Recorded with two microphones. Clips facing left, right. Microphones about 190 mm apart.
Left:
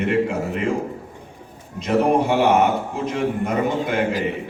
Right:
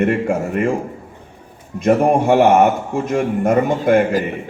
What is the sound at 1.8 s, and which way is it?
A man's voice, 50° right (ahead or behind).